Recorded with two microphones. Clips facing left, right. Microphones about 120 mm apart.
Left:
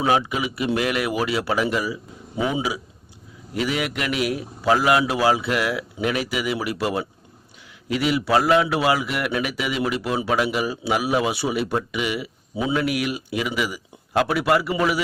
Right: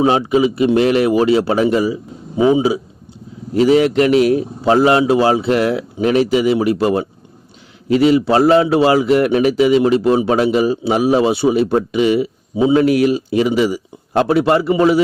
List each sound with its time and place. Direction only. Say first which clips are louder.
0.0 s a man's voice: right 8 dB; 30° right (ahead or behind)